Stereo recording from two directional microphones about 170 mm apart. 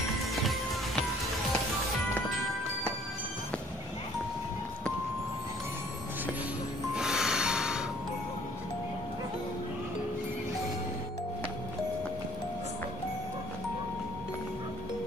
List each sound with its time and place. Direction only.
7.0 s music: 5° right (ahead or behind)